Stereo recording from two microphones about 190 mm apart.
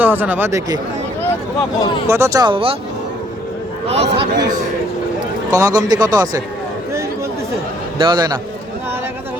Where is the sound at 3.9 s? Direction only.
35° right (ahead or behind).